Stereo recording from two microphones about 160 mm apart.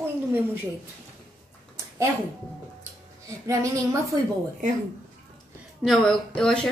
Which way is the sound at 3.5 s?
20° right (ahead or behind).